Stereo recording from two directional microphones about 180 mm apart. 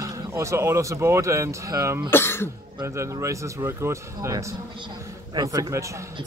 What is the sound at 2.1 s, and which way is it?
Cough, 10° left (ahead or behind).